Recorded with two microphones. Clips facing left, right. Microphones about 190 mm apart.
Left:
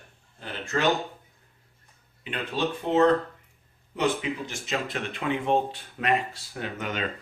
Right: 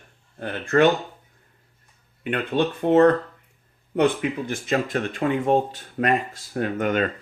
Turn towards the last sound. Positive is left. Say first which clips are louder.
# right 9 dB
turn(degrees=-50)  # may be behind; listen again after turning